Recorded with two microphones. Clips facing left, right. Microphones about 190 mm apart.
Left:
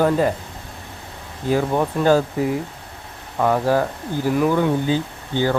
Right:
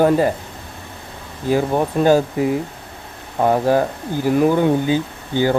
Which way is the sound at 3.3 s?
25° right (ahead or behind).